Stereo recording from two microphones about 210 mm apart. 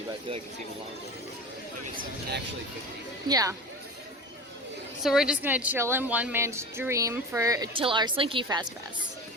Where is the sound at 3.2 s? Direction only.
15° right (ahead or behind).